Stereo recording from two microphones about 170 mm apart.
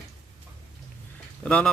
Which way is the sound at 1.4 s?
5° left (ahead or behind).